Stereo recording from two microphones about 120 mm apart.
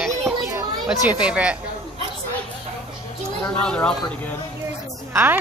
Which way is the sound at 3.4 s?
10° left (ahead or behind).